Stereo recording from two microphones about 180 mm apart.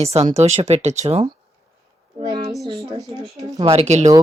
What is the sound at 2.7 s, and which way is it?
Speech, 20° right (ahead or behind).